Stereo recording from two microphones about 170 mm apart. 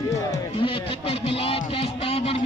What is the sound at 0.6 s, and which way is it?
A man's voice, 30° left (ahead or behind).